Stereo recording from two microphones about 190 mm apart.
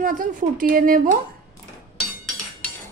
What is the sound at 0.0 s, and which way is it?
Speech, 45° right (ahead or behind).